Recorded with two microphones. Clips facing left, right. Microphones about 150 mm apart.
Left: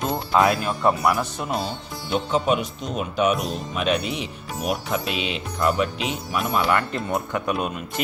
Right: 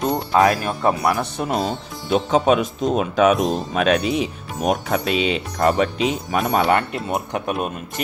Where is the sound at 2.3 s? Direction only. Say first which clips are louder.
Right 5 dB; 90° right.